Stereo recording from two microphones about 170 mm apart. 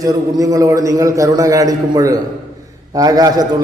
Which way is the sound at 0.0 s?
20° right (ahead or behind).